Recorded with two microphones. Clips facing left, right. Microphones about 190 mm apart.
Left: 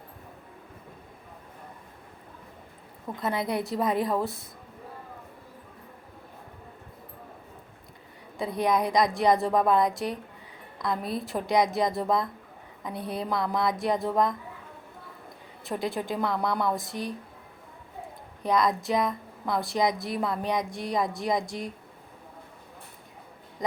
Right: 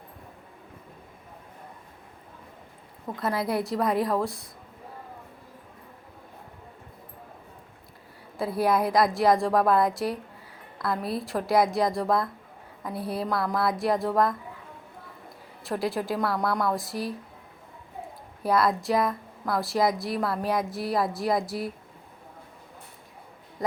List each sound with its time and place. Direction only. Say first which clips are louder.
3.2 s a woman's voice: right 1 dB; centre (ahead or behind)
8.4 s a woman's voice: right 1 dB; 5° right (ahead or behind)
15.6 s a woman's voice: right 2 dB; centre (ahead or behind)
18.4 s a woman's voice: right 1 dB; 5° right (ahead or behind)
23.6 s a sound: right 1 dB; 15° left (ahead or behind)